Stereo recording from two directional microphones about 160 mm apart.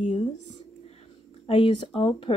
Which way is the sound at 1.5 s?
35° left (ahead or behind).